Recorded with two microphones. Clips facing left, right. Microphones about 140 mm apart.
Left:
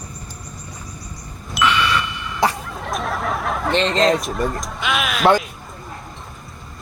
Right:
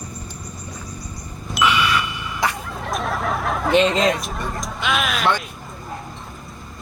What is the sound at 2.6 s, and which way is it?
Speech, centre (ahead or behind).